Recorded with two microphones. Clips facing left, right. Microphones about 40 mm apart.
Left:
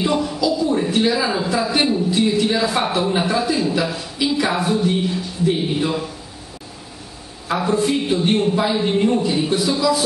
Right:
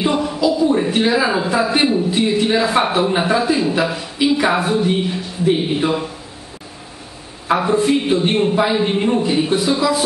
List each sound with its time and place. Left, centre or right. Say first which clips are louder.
0.0 s a man's voice: right 2 dB; centre
7.4 s a man's voice: right 3 dB; right